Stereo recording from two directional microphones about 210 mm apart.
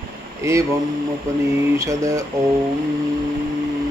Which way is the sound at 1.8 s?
15° right (ahead or behind).